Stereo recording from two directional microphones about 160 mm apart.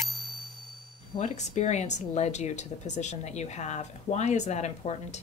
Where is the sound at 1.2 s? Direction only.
45° left (ahead or behind).